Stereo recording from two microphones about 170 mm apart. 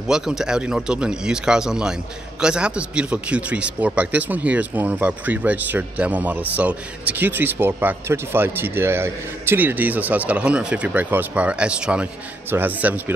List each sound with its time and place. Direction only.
0.1 s speech: 5° right (ahead or behind)